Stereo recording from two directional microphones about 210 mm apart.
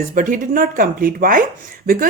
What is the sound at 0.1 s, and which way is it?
A woman's voice, 40° right (ahead or behind).